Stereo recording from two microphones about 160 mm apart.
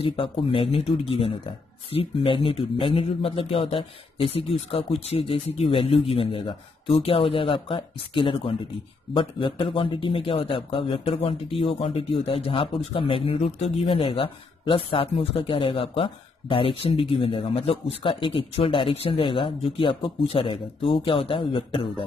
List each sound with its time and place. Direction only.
0.0 s a man's voice: 35° left (ahead or behind)